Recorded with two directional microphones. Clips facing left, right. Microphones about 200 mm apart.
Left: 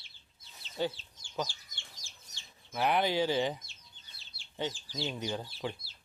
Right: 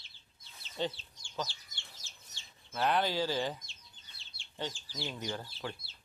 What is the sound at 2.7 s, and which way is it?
Speech, 15° left (ahead or behind).